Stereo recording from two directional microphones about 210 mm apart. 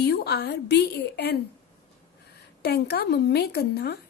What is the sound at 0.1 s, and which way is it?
Speech, 50° left (ahead or behind).